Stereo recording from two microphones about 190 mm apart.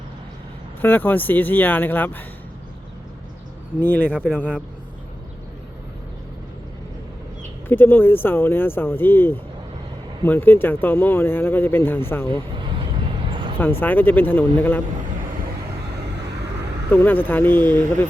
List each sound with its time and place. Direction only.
0.8 s speech: 10° left (ahead or behind)
3.8 s speech: 10° left (ahead or behind)
7.7 s speech: 10° left (ahead or behind)
12.5 s vehicle: 25° right (ahead or behind)
13.6 s speech: 10° left (ahead or behind)
16.9 s speech: 10° left (ahead or behind)